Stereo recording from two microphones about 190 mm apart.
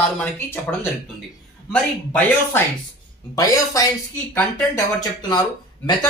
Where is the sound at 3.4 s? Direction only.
20° left (ahead or behind).